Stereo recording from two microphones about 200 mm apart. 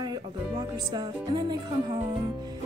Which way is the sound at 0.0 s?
20° right (ahead or behind).